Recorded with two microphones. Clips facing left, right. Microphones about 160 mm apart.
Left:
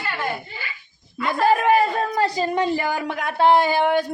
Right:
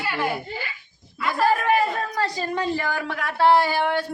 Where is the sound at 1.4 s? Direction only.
25° left (ahead or behind).